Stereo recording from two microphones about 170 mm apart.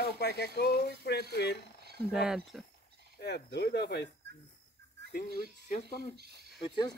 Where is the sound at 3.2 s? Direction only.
80° left.